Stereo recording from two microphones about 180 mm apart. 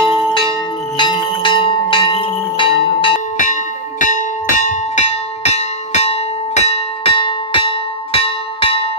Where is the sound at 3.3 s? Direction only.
45° left (ahead or behind).